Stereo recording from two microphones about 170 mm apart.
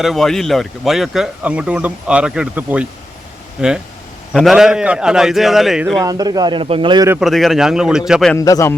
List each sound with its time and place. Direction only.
0.0 s speech: centre (ahead or behind)
6.0 s a man's voice: 20° right (ahead or behind)
7.2 s speech: centre (ahead or behind)
8.4 s a man's voice: 20° left (ahead or behind)